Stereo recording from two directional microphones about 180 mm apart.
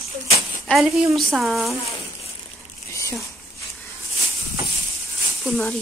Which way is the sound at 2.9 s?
15° left (ahead or behind).